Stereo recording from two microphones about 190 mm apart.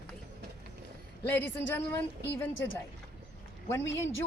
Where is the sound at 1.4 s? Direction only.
10° left (ahead or behind).